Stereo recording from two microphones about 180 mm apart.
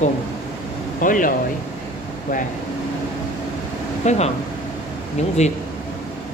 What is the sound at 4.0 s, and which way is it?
Speech, 40° left (ahead or behind).